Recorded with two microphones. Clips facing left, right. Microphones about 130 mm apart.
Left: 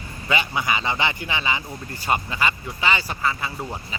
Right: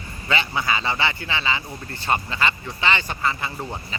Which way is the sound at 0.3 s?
15° left (ahead or behind).